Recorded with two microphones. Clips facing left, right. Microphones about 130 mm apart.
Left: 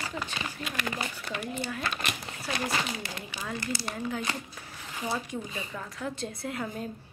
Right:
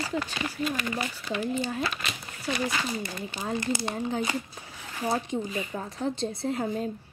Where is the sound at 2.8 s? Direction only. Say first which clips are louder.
Right 4 dB; 85° left.